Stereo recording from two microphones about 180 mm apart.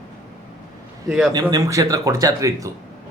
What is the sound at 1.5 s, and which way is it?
Speech, 20° right (ahead or behind).